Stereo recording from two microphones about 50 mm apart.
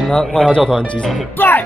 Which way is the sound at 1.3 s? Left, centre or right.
Left.